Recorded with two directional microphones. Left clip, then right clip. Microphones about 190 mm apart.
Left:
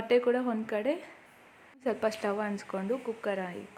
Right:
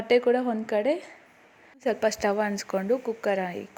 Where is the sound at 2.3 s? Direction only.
20° right (ahead or behind).